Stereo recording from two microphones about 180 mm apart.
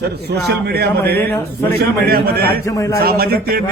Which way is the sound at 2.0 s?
60° right (ahead or behind).